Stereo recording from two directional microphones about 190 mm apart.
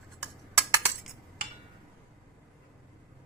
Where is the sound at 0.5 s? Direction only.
15° right (ahead or behind).